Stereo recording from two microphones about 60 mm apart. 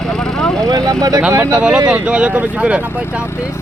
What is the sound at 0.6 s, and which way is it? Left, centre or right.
Speech, right.